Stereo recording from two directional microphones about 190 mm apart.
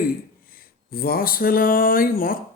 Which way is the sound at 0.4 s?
50° left (ahead or behind).